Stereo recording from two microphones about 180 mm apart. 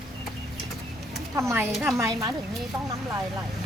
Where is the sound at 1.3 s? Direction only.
15° right (ahead or behind).